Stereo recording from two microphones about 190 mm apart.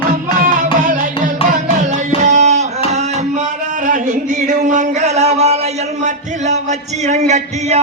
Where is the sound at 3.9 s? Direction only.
40° right (ahead or behind).